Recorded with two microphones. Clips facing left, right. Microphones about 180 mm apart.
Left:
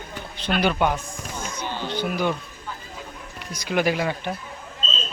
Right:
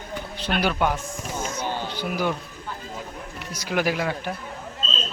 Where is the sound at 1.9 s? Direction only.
5° right (ahead or behind).